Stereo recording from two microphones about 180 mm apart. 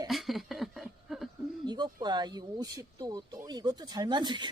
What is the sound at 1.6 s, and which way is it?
Speech, 25° right (ahead or behind).